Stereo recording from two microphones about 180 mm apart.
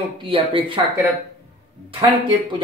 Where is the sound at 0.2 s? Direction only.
30° right (ahead or behind).